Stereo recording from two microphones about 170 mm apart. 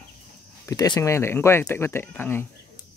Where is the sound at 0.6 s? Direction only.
20° left (ahead or behind).